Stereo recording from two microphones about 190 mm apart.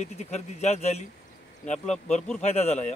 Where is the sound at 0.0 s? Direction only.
35° left (ahead or behind).